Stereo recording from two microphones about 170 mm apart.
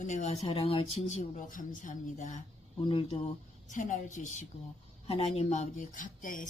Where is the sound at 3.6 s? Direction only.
50° left (ahead or behind).